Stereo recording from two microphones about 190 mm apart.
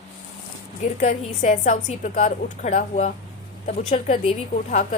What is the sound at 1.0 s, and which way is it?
A woman's voice, 40° left (ahead or behind).